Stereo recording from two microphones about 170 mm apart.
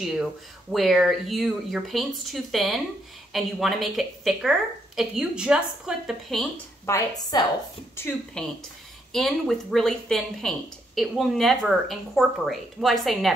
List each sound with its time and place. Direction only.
0.0 s a woman's voice: 5° right (ahead or behind)
6.9 s a woman's voice: 20° left (ahead or behind)
7.9 s a woman's voice: 10° left (ahead or behind)
9.1 s a woman's voice: centre (ahead or behind)